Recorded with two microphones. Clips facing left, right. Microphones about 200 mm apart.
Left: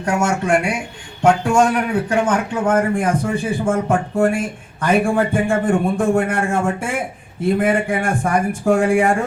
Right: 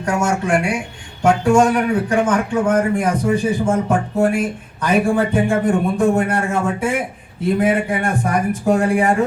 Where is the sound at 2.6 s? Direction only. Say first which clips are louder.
Left 2 dB; 50° left (ahead or behind).